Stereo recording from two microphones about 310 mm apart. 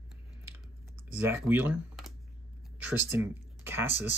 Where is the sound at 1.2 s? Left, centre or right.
Centre.